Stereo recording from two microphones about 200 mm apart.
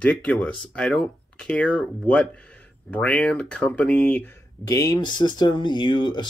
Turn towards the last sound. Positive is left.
turn(degrees=20)  # may be behind; listen again after turning